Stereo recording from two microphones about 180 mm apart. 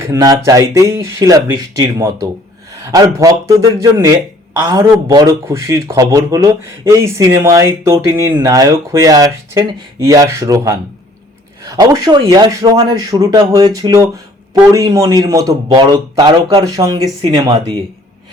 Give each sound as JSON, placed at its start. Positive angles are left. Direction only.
{"t": 0.0, "sound": "speech", "side_deg": -20}
{"t": 17.2, "sound": "speech", "side_deg": -30}